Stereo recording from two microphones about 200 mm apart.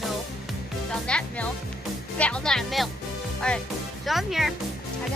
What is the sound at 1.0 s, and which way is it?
Speech, 5° left (ahead or behind).